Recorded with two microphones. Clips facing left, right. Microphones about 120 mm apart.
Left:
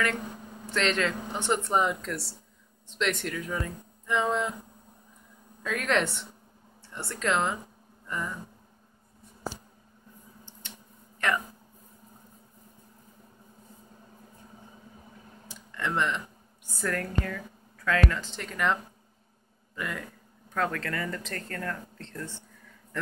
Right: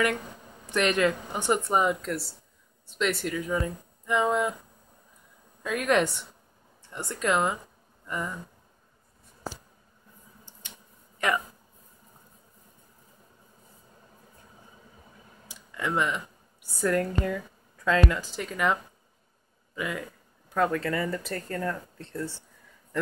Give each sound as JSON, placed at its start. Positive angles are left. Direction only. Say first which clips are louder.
{"t": 0.7, "sound": "speech", "louder": "right 3 dB", "side_deg": -15}
{"t": 5.6, "sound": "speech", "louder": "right 3 dB", "side_deg": -10}
{"t": 11.1, "sound": "speech", "louder": "right 1 dB", "side_deg": -15}
{"t": 15.4, "sound": "a sound", "louder": "right 1 dB", "side_deg": -10}
{"t": 16.7, "sound": "speech", "louder": "right 5 dB", "side_deg": -15}